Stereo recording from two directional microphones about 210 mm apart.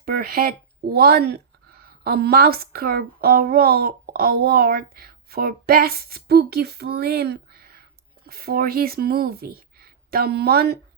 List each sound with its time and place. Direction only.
0.0 s speech: 45° right (ahead or behind)